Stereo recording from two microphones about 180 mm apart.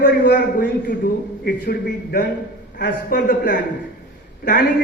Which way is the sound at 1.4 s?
65° left (ahead or behind).